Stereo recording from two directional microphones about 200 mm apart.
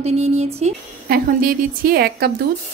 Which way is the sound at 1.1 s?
45° right (ahead or behind).